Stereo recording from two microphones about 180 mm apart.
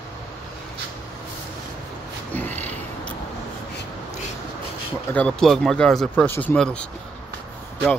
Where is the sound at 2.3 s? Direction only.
10° left (ahead or behind).